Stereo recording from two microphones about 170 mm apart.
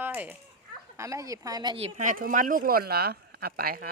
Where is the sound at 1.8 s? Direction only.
50° right (ahead or behind).